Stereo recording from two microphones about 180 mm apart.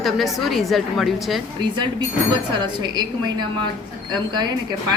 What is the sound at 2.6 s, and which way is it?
Speech, 25° right (ahead or behind).